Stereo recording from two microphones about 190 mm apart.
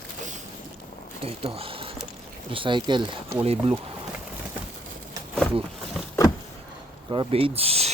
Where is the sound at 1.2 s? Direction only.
30° right (ahead or behind).